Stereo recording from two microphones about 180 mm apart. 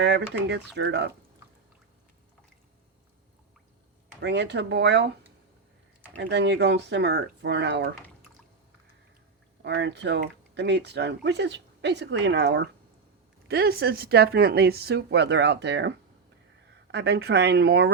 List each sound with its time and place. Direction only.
0.0 s speech: 75° right (ahead or behind)
4.2 s speech: 75° right (ahead or behind)
6.1 s speech: 75° right (ahead or behind)
9.6 s speech: 75° right (ahead or behind)
13.5 s speech: 60° right (ahead or behind)
16.9 s speech: 65° right (ahead or behind)